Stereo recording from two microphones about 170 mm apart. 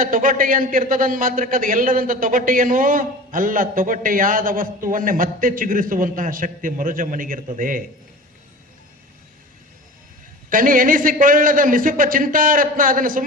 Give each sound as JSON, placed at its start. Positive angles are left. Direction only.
{"t": 0.0, "sound": "a man's voice", "side_deg": -55}
{"t": 10.5, "sound": "a man's voice", "side_deg": -55}